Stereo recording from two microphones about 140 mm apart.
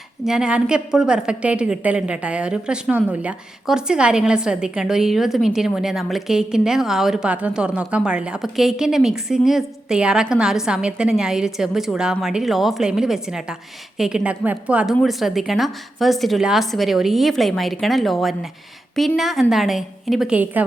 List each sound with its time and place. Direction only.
0.3 s a woman's voice: 5° right (ahead or behind)